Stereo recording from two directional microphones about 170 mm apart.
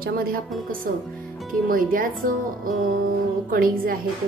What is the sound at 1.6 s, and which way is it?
Speech, 55° right (ahead or behind).